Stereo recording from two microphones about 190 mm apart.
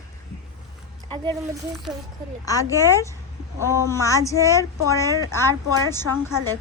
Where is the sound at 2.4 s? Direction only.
15° left (ahead or behind).